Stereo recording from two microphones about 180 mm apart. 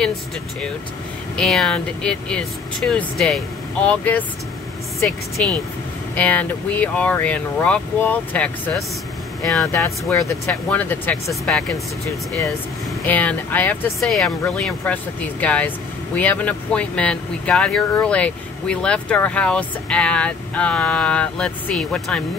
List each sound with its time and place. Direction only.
0.0 s speech: 5° left (ahead or behind)
13.0 s speech: 10° left (ahead or behind)